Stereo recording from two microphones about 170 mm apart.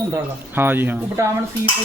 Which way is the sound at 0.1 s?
10° right (ahead or behind).